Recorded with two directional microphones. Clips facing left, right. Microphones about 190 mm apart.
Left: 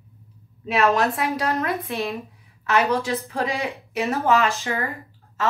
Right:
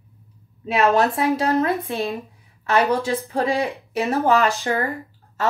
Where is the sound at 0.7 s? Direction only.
30° right (ahead or behind).